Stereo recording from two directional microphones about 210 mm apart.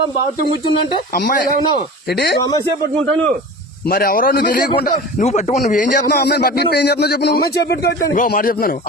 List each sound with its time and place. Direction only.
1.1 s speech: 45° left (ahead or behind)
3.8 s speech: 45° left (ahead or behind)
5.2 s speech: 30° left (ahead or behind); by 7.9 s 50° left (ahead or behind)
8.1 s speech: 40° left (ahead or behind)